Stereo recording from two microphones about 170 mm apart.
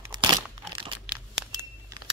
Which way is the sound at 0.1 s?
25° right (ahead or behind).